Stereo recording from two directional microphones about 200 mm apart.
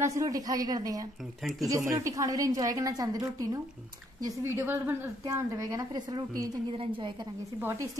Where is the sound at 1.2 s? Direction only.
Centre (ahead or behind).